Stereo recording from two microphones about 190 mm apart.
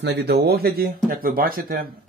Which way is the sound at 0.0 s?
60° right (ahead or behind).